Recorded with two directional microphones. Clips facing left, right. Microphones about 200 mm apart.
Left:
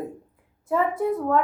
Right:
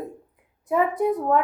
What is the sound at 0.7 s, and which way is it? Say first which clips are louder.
Speech: right 1 dB; 15° right (ahead or behind).